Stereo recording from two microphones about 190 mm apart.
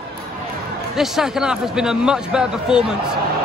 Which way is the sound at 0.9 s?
Centre (ahead or behind).